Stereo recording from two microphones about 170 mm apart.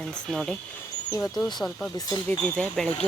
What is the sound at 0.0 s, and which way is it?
Speech, centre (ahead or behind).